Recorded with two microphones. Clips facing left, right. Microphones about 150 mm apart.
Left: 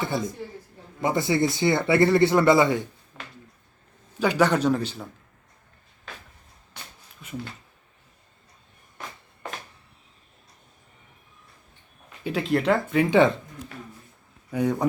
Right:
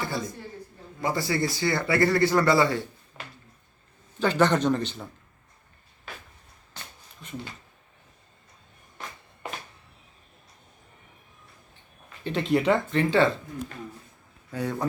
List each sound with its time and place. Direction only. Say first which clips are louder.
1.0 s a man's voice: left 4 dB; 20° left (ahead or behind)
4.2 s speech: left 1 dB; 10° left (ahead or behind)
7.2 s speech: left 2 dB; 5° left (ahead or behind)
12.2 s speech: even; centre (ahead or behind)
14.5 s speech: left 5 dB; 15° left (ahead or behind)